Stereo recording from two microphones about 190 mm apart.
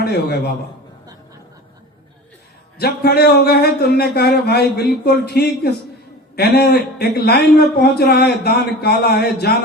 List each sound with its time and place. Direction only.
0.0 s a man's voice: 55° left (ahead or behind)
2.7 s a man's voice: 55° left (ahead or behind)